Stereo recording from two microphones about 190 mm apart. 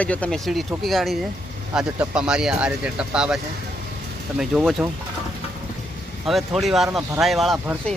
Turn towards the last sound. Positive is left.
turn(degrees=0)  # may be behind; listen again after turning